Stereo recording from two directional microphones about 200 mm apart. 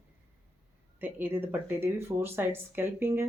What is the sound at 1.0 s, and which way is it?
Speech, 10° right (ahead or behind).